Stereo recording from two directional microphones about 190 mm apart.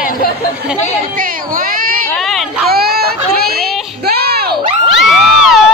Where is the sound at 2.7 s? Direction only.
55° right (ahead or behind).